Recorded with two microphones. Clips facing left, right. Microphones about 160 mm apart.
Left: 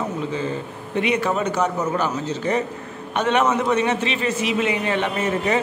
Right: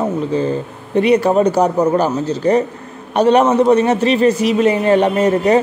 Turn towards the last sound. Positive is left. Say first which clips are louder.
# right 9 dB
turn(degrees=-40)  # may be behind; listen again after turning